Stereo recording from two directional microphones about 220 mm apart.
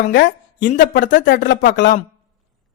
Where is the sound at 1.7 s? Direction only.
55° left (ahead or behind).